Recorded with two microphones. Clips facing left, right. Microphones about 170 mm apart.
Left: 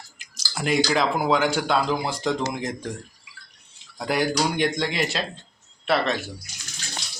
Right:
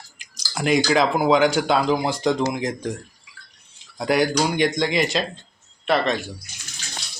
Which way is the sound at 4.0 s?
Centre (ahead or behind).